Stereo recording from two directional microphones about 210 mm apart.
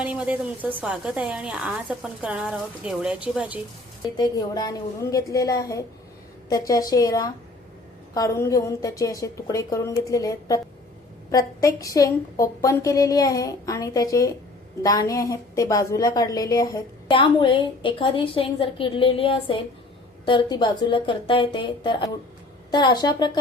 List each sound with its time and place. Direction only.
0.0 s a woman's voice: 5° right (ahead or behind)
4.2 s a woman's voice: 20° left (ahead or behind)